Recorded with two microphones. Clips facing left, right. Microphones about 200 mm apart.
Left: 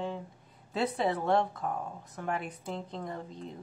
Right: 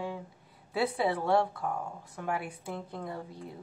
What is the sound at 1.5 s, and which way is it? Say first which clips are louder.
Speech: even; 20° left (ahead or behind).